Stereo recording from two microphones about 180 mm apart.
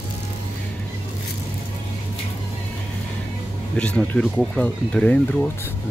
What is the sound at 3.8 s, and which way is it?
Speech, 5° left (ahead or behind).